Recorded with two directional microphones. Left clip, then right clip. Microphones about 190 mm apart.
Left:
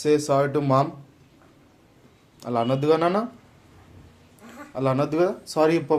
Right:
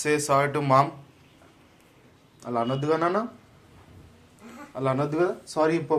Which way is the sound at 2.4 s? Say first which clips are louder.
Left 4 dB; 35° left (ahead or behind).